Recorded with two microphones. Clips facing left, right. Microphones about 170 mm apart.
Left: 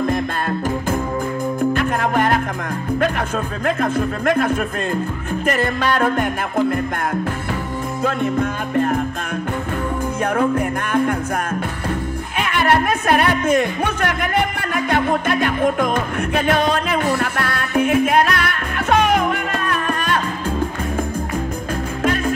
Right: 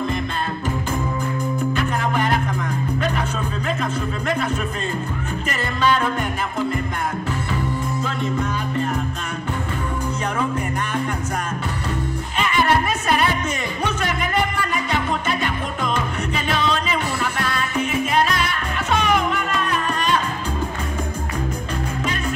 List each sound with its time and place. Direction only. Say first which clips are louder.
1.7 s music: left 3 dB; 55° left (ahead or behind)
3.6 s speech: left 7 dB; 55° left (ahead or behind)
8.0 s music: left 9 dB; 55° left (ahead or behind)
12.4 s music: left 2 dB; 60° left (ahead or behind)